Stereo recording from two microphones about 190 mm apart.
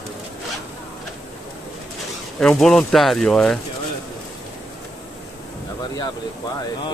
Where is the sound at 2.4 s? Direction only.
5° left (ahead or behind).